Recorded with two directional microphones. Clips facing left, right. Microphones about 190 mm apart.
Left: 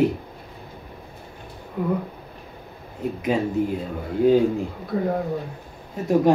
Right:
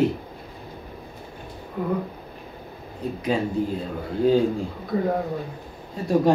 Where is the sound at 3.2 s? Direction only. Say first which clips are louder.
Left 1 dB; 20° left (ahead or behind).